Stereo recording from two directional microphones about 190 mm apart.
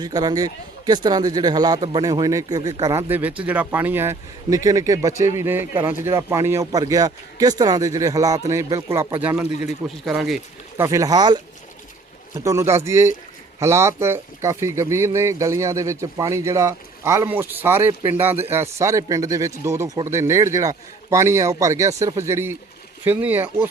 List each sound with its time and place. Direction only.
0.0 s a man's voice: 20° right (ahead or behind); by 10.4 s centre (ahead or behind)
10.8 s a man's voice: 15° right (ahead or behind)